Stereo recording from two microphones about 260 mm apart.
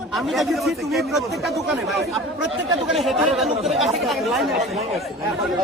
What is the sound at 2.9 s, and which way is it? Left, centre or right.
Speech, centre.